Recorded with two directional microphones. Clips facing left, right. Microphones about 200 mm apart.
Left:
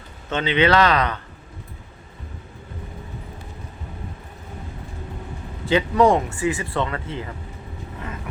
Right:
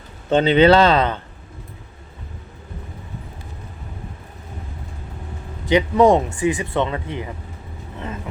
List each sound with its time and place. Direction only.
0.3 s speech: 35° right (ahead or behind)
5.6 s speech: 20° right (ahead or behind)